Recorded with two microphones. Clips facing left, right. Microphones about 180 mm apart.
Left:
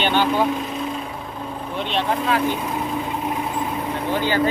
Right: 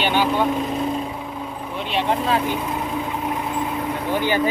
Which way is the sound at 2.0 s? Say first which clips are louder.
Right 1 dB; 25° right (ahead or behind).